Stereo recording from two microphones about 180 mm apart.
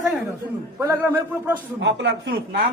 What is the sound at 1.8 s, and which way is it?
Speech, 75° right (ahead or behind).